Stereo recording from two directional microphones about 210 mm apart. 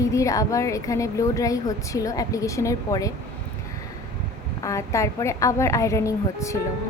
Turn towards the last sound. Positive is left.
turn(degrees=15)  # may be behind; listen again after turning